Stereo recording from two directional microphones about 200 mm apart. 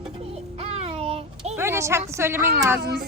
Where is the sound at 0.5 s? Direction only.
30° right (ahead or behind).